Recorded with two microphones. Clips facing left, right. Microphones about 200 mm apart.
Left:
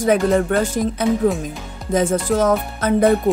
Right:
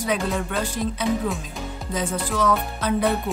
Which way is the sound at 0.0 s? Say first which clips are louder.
Left 9 dB; 50° left (ahead or behind).